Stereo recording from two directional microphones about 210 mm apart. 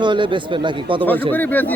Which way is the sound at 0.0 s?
20° right (ahead or behind).